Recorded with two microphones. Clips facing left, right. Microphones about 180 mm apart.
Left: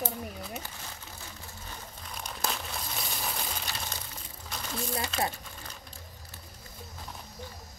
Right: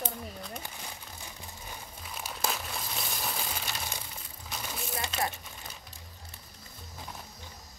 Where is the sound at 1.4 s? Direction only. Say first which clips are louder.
Even; 10° right (ahead or behind).